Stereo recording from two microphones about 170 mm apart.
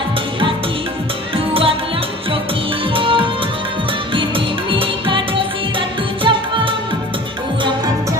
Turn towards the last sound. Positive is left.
turn(degrees=-30)  # may be behind; listen again after turning